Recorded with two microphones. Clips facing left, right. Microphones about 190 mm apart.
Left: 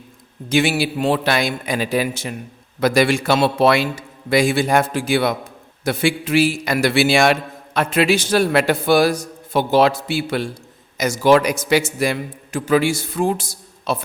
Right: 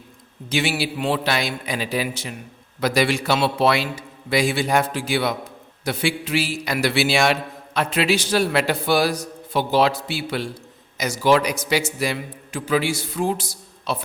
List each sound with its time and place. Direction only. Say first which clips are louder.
0.5 s a man's voice: left 5 dB; 50° left (ahead or behind)